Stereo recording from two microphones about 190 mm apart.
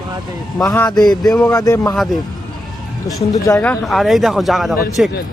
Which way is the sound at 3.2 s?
15° left (ahead or behind).